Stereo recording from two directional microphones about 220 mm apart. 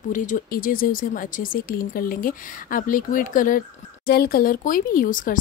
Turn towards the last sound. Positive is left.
turn(degrees=40)  # may be behind; listen again after turning